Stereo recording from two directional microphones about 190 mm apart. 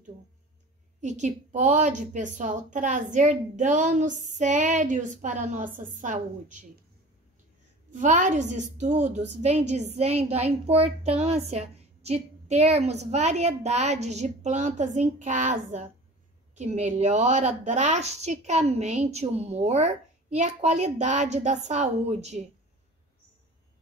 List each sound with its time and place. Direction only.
1.0 s a woman's voice: 40° right (ahead or behind)
7.9 s a woman's voice: 40° right (ahead or behind)